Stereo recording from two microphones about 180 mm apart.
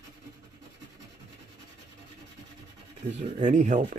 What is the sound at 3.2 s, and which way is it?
Speech, 45° right (ahead or behind).